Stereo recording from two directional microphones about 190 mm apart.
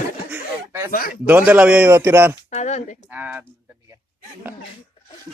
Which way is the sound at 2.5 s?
35° left (ahead or behind).